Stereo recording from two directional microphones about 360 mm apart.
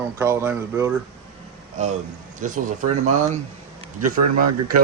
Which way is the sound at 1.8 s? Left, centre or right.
Centre.